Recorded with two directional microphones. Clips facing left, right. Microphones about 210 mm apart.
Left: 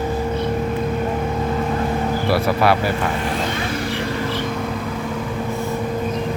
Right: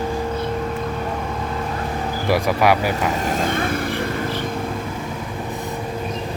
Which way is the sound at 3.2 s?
45° right (ahead or behind).